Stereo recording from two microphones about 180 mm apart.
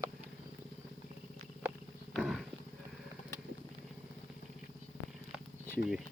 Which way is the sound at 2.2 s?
Centre (ahead or behind).